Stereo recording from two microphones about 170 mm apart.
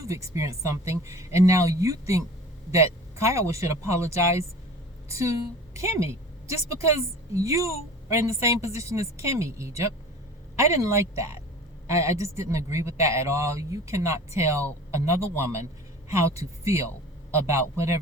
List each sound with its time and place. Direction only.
0.0 s a woman's voice: 20° right (ahead or behind)
7.3 s a woman's voice: 20° right (ahead or behind)